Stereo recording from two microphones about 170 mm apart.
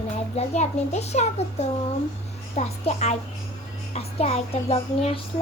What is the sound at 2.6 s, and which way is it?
A child's voice, 40° left (ahead or behind).